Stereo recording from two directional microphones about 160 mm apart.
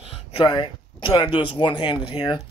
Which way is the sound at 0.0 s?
35° left (ahead or behind).